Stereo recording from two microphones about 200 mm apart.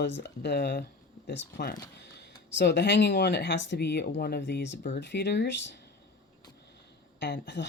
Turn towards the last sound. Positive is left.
turn(degrees=60)  # may be behind; listen again after turning